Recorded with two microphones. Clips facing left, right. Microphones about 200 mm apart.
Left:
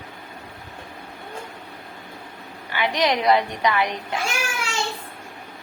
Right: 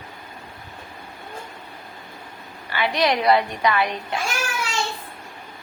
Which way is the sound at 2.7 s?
15° left (ahead or behind).